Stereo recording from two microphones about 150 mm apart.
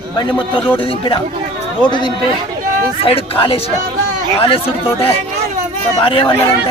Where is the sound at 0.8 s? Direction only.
35° left (ahead or behind).